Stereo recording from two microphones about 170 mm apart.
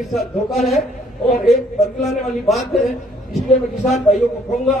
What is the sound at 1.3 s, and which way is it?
Speech, 45° left (ahead or behind).